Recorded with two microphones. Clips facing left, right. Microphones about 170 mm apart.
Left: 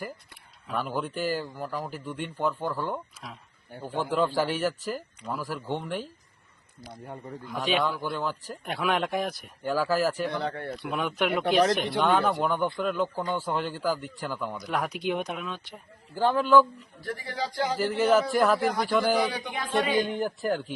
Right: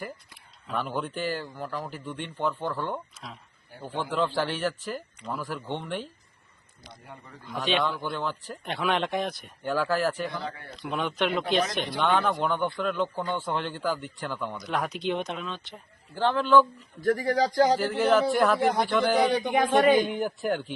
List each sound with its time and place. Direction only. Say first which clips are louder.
0.7 s speech: even; 5° left (ahead or behind)
7.4 s speech: even; 5° left (ahead or behind)
10.4 s speech: left 5 dB; 60° left (ahead or behind)
10.8 s speech: right 1 dB; 5° left (ahead or behind)
17.0 s speech: right 9 dB; 45° right (ahead or behind)
17.7 s speech: even; 10° left (ahead or behind)
19.5 s speech: right 7 dB; 55° right (ahead or behind)
20.0 s speech: right 1 dB; 5° right (ahead or behind)